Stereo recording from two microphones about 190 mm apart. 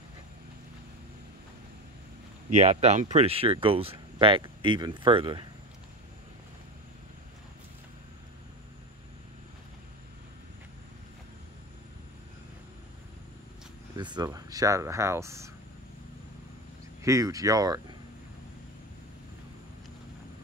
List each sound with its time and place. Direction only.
2.5 s speech: 35° right (ahead or behind)
13.9 s speech: 25° right (ahead or behind)
17.0 s speech: 15° right (ahead or behind)